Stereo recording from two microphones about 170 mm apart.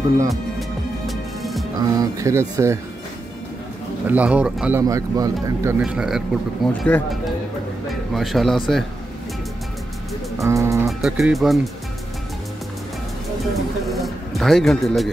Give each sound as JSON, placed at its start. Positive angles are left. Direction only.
{"t": 0.3, "sound": "music", "side_deg": 0}
{"t": 2.0, "sound": "speech", "side_deg": -20}
{"t": 4.1, "sound": "speech", "side_deg": -10}
{"t": 5.8, "sound": "speech", "side_deg": -5}
{"t": 10.3, "sound": "speech", "side_deg": -20}
{"t": 10.9, "sound": "speech", "side_deg": 0}
{"t": 13.4, "sound": "speech", "side_deg": 0}